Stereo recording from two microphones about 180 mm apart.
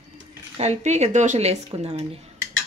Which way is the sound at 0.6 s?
40° right (ahead or behind).